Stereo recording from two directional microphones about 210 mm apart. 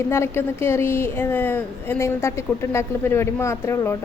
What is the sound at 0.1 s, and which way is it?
A woman's voice, 10° left (ahead or behind).